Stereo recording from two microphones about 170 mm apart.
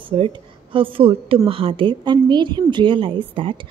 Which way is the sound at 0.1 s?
40° right (ahead or behind).